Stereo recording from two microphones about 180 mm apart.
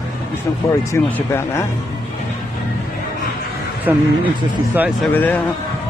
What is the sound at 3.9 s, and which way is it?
Speech, 10° right (ahead or behind).